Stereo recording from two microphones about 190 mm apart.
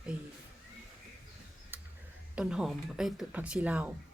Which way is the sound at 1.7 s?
10° right (ahead or behind).